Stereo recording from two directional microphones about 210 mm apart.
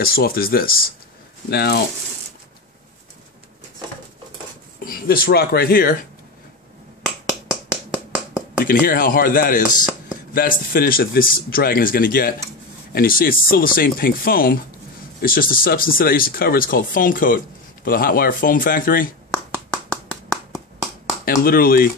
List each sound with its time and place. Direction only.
0.0 s speech: 45° left (ahead or behind)
4.8 s speech: 45° left (ahead or behind)
7.2 s a sound: 5° right (ahead or behind)
8.6 s speech: 45° left (ahead or behind)
19.3 s a sound: 5° left (ahead or behind)
21.5 s speech: 45° left (ahead or behind)